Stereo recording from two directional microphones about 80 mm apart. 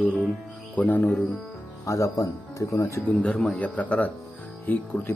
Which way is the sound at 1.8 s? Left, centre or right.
Left.